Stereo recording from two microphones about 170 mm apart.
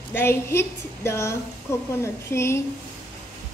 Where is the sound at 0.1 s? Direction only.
15° left (ahead or behind).